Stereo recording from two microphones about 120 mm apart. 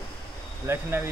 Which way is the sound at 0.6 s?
20° right (ahead or behind).